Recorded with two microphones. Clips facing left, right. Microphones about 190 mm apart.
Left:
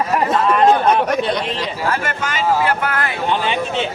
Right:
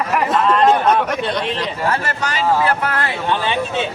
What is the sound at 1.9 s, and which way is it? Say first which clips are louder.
Speech: even; 35° right (ahead or behind).